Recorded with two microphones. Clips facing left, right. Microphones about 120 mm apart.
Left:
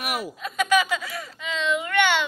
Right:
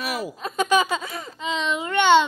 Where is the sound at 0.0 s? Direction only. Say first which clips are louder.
Right 1 dB; 35° right (ahead or behind).